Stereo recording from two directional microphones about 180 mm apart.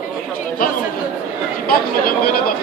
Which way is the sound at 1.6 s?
55° left (ahead or behind).